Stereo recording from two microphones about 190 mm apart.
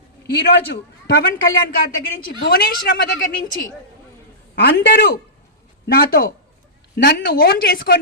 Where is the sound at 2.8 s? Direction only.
55° left (ahead or behind).